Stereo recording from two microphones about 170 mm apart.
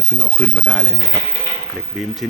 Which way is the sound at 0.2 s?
10° left (ahead or behind).